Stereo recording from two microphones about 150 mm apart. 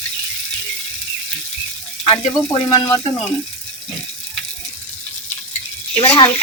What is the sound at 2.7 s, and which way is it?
Speech, 25° left (ahead or behind).